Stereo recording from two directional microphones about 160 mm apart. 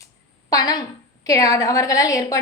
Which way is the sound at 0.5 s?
25° left (ahead or behind).